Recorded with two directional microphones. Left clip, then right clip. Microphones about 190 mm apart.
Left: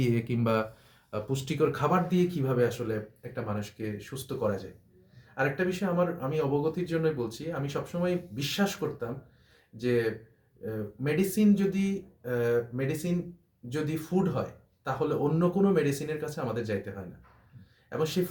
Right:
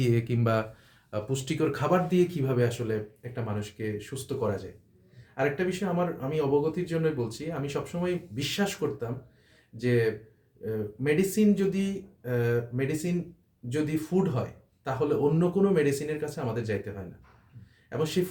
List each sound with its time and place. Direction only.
0.0 s speech: 15° right (ahead or behind)
14.8 s speech: 20° right (ahead or behind)